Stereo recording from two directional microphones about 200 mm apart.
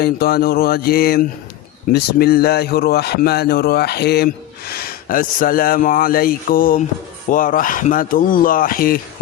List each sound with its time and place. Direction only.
0.0 s speech: 50° left (ahead or behind)